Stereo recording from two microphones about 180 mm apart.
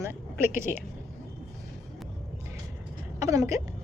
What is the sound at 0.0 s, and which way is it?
Speech, 15° right (ahead or behind).